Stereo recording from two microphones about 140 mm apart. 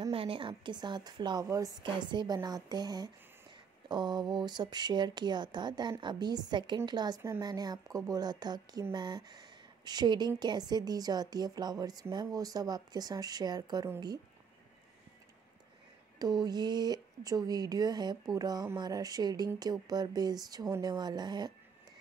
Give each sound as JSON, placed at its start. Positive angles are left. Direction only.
{"t": 0.1, "sound": "a woman's voice", "side_deg": -40}
{"t": 16.2, "sound": "a woman's voice", "side_deg": -30}